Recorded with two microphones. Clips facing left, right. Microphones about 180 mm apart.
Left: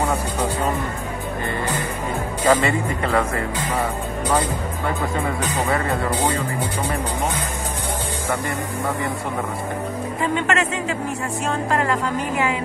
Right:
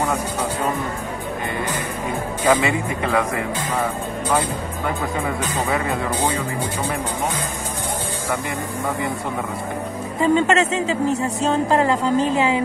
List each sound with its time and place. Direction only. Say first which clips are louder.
2.4 s speech: even; centre (ahead or behind)
5.4 s speech: even; centre (ahead or behind)
10.2 s a woman's voice: right 5 dB; 25° right (ahead or behind)